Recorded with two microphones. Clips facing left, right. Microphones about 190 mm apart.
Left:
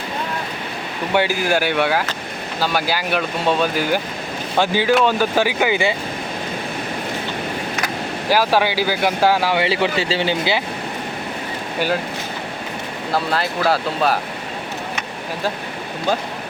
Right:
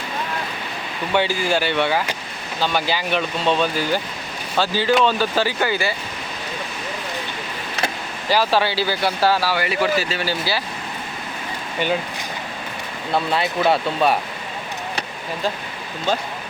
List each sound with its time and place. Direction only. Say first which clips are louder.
1.1 s speech: left 2 dB; 10° left (ahead or behind)
8.3 s speech: left 2 dB; 10° left (ahead or behind)
13.1 s speech: right 1 dB; centre (ahead or behind)